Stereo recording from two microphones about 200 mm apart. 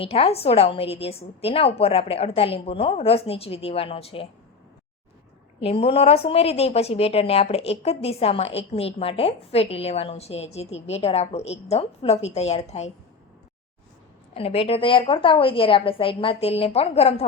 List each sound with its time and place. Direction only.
0.0 s a woman's voice: 30° left (ahead or behind)
5.5 s a woman's voice: 30° left (ahead or behind)
14.3 s a woman's voice: 30° left (ahead or behind)